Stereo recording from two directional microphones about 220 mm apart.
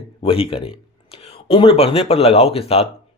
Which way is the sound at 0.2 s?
25° left (ahead or behind).